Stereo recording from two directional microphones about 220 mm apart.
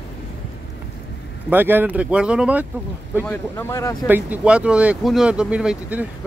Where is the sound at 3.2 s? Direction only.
10° left (ahead or behind).